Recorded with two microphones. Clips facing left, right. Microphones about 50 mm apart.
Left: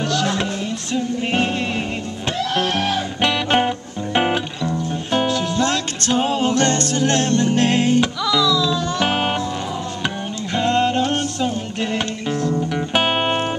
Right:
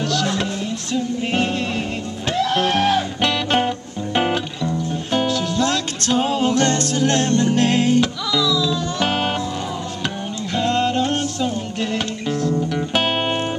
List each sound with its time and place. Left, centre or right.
0.1 s music: centre
2.6 s music: centre
3.2 s music: centre
6.5 s a capella: centre
7.3 s music: centre
8.4 s music: left
9.0 s music: centre